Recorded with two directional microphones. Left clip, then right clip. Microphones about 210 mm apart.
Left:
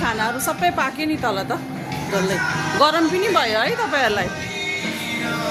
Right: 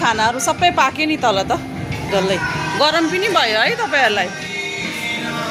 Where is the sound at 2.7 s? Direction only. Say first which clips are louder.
Right 1 dB; 10° left (ahead or behind).